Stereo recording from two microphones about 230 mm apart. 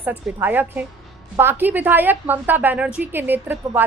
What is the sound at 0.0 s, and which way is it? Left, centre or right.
A woman's voice, centre.